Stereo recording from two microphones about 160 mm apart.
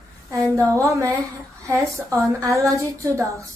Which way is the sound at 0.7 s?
20° right (ahead or behind).